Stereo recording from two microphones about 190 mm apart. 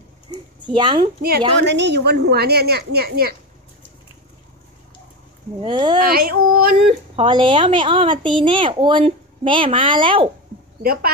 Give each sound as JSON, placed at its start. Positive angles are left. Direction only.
{"t": 0.3, "sound": "a sound", "side_deg": -25}
{"t": 1.6, "sound": "a woman's voice", "side_deg": -65}
{"t": 5.6, "sound": "a woman's voice", "side_deg": -25}
{"t": 5.9, "sound": "yodeling", "side_deg": -50}
{"t": 7.2, "sound": "a woman's voice", "side_deg": -25}
{"t": 10.8, "sound": "speech", "side_deg": -50}